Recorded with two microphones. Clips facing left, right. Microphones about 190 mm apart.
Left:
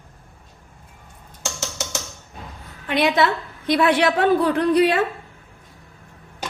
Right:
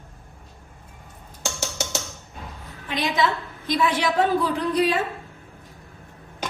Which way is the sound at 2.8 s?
65° left (ahead or behind).